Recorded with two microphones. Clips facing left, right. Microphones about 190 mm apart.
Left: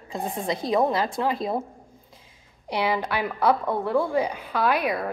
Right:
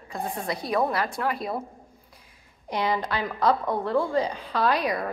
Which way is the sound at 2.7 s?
10° left (ahead or behind).